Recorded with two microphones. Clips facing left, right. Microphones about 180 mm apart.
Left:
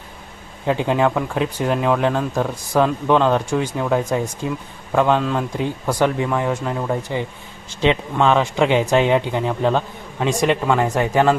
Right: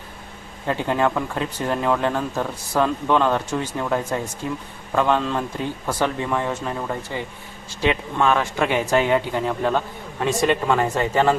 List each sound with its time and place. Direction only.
0.7 s speech: 15° left (ahead or behind)
5.5 s speech: 15° left (ahead or behind)